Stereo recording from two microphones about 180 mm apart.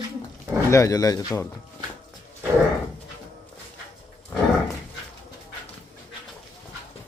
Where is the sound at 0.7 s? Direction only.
15° left (ahead or behind).